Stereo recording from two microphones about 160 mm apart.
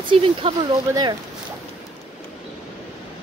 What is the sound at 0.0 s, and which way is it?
Speech, 35° right (ahead or behind).